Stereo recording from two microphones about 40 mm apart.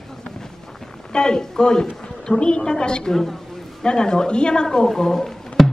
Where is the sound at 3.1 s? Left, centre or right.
Centre.